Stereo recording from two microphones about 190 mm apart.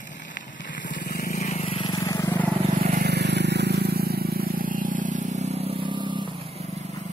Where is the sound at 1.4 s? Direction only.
30° left (ahead or behind); by 2.5 s 15° left (ahead or behind).